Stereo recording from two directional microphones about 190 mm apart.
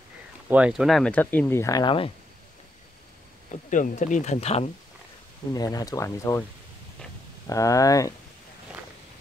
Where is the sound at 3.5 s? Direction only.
40° left (ahead or behind).